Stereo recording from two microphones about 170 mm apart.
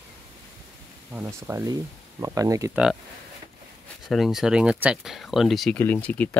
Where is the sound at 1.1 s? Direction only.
15° right (ahead or behind).